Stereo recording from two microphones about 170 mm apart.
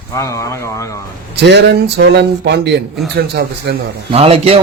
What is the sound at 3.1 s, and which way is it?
Speech, 75° right (ahead or behind).